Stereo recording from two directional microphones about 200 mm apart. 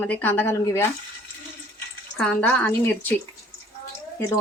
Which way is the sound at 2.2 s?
5° left (ahead or behind).